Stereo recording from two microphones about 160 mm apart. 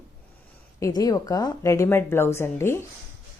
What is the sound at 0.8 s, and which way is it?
A woman's voice, 20° left (ahead or behind).